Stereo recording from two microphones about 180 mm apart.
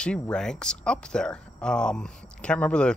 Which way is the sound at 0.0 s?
5° left (ahead or behind).